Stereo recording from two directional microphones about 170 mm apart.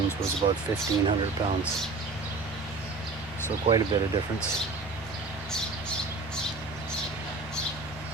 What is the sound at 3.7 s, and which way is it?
Speech, 20° right (ahead or behind).